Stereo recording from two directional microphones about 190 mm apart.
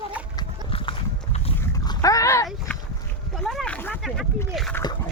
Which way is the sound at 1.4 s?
20° left (ahead or behind).